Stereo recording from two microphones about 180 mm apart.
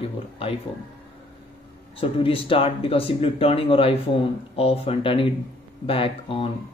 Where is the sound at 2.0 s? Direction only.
30° left (ahead or behind).